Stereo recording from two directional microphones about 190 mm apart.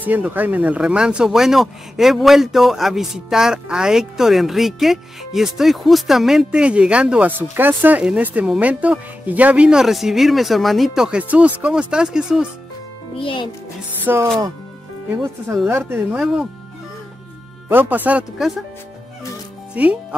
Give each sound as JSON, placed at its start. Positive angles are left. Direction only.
{"t": 0.0, "sound": "speech", "side_deg": -10}
{"t": 13.2, "sound": "a child's voice", "side_deg": 25}
{"t": 14.0, "sound": "speech", "side_deg": -10}
{"t": 15.4, "sound": "speech", "side_deg": -10}
{"t": 17.6, "sound": "speech", "side_deg": -10}
{"t": 19.7, "sound": "speech", "side_deg": -5}